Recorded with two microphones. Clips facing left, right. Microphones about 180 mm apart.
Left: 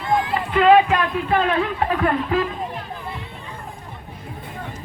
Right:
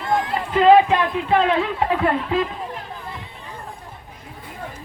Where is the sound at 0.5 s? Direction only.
30° right (ahead or behind).